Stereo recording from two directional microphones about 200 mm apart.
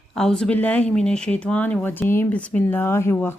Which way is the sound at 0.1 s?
5° left (ahead or behind).